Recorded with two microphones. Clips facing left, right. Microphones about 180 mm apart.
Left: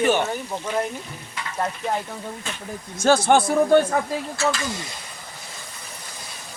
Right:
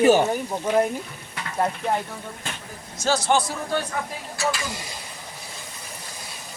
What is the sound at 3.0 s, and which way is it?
Speech, 55° left (ahead or behind).